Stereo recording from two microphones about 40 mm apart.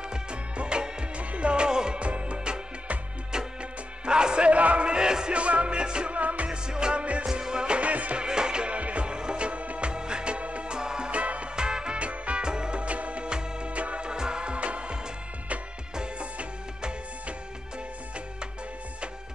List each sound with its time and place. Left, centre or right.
0.1 s music: right
2.0 s music: right
4.0 s music: right
6.1 s music: right
6.5 s music: right
7.2 s music: centre; by 8.2 s right
8.2 s music: centre
11.1 s music: right
11.5 s music: right
14.1 s music: centre